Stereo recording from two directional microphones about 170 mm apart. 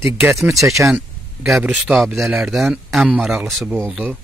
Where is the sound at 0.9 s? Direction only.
Centre (ahead or behind).